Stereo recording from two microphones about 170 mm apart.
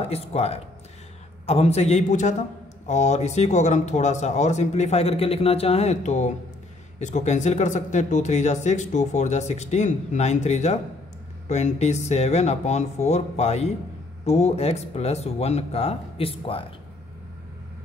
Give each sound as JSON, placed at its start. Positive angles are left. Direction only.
{"t": 0.0, "sound": "speech", "side_deg": 40}